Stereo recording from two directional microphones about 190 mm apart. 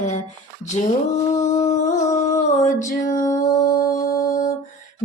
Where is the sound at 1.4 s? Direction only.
40° left (ahead or behind).